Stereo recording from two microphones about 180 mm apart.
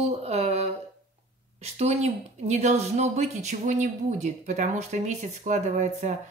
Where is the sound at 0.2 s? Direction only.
35° right (ahead or behind).